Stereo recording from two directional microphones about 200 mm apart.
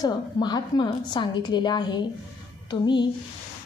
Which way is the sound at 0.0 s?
20° left (ahead or behind).